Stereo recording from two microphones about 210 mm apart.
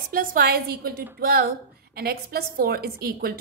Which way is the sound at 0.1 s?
40° right (ahead or behind).